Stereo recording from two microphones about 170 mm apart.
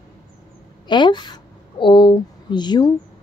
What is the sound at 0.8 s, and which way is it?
A woman's voice, 25° left (ahead or behind).